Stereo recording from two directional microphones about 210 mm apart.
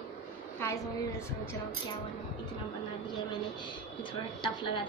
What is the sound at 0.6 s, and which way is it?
Speech, 10° left (ahead or behind).